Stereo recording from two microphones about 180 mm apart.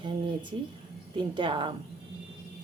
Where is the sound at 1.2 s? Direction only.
25° right (ahead or behind).